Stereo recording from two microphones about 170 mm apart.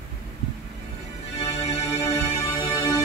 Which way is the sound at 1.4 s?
40° left (ahead or behind).